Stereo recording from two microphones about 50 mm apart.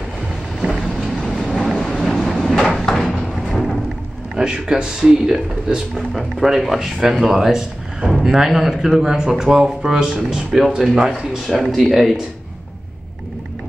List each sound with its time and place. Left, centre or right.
0.6 s vehicle: centre
2.8 s a sound: centre
4.4 s speech: centre
5.9 s speech: centre
11.4 s speech: centre